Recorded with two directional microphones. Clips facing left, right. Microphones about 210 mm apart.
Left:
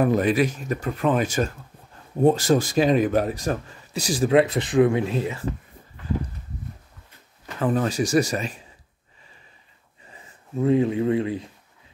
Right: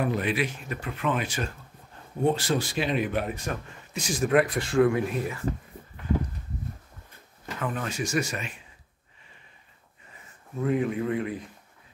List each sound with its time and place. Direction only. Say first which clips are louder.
0.0 s a man's voice: left 7 dB; 40° left (ahead or behind); by 5.4 s 25° left (ahead or behind)
7.6 s a man's voice: left 9 dB; 35° left (ahead or behind)
10.6 s speech: left 6 dB; 25° left (ahead or behind)